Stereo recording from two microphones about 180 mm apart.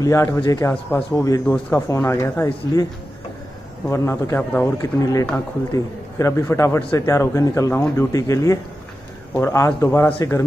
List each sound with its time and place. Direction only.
0.0 s speech: 15° left (ahead or behind)
3.9 s speech: 15° left (ahead or behind)